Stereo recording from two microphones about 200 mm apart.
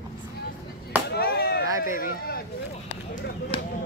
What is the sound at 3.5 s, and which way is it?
Speech, 25° left (ahead or behind).